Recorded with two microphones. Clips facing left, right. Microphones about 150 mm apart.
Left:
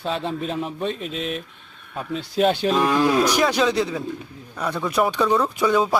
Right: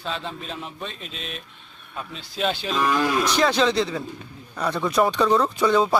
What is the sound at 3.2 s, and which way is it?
Speech, 10° left (ahead or behind).